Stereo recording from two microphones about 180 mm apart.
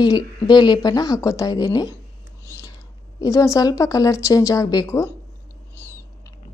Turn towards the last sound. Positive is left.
turn(degrees=20)  # may be behind; listen again after turning